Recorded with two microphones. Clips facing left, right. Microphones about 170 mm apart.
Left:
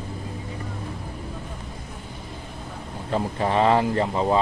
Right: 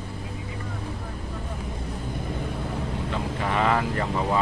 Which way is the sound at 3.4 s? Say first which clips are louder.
Left 4 dB; 30° left (ahead or behind).